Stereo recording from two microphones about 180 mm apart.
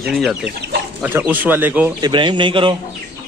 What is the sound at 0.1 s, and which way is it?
Speech, centre (ahead or behind).